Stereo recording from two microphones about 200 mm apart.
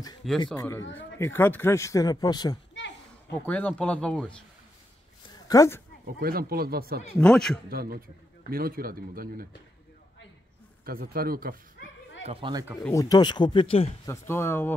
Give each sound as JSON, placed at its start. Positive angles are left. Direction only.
{"t": 0.2, "sound": "speech", "side_deg": 0}
{"t": 0.6, "sound": "speech", "side_deg": 15}
{"t": 3.4, "sound": "speech", "side_deg": 5}
{"t": 5.3, "sound": "a sound", "side_deg": 15}
{"t": 6.0, "sound": "speech", "side_deg": -50}
{"t": 7.2, "sound": "speech", "side_deg": 5}
{"t": 7.7, "sound": "speech", "side_deg": -50}
{"t": 10.9, "sound": "speech", "side_deg": -50}
{"t": 12.3, "sound": "speech", "side_deg": -25}
{"t": 12.8, "sound": "speech", "side_deg": 15}
{"t": 14.0, "sound": "speech", "side_deg": 15}